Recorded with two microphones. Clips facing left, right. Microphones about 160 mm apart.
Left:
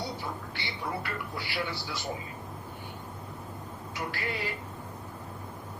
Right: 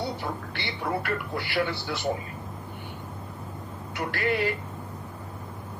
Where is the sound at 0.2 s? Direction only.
65° right (ahead or behind).